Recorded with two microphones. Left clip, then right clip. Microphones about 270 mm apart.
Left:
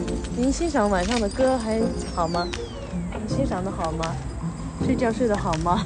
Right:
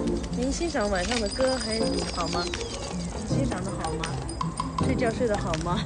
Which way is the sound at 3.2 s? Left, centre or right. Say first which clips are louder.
Left 4 dB; centre.